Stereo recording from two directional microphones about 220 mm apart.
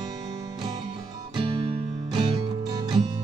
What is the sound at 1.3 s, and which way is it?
Music, 20° right (ahead or behind).